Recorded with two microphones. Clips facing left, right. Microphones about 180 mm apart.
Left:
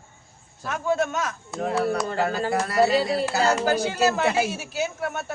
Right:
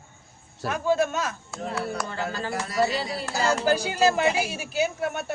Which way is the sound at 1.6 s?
55° left (ahead or behind).